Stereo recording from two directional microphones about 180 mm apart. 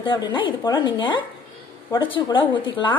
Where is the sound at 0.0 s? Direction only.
25° left (ahead or behind).